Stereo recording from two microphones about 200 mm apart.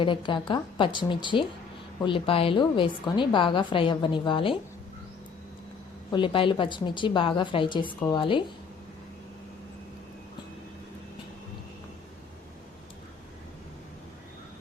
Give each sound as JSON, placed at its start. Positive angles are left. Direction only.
{"t": 0.0, "sound": "a woman's voice", "side_deg": 25}
{"t": 6.1, "sound": "a woman's voice", "side_deg": 25}